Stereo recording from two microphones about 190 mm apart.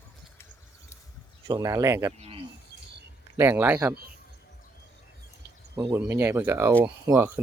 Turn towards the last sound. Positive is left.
turn(degrees=-10)  # may be behind; listen again after turning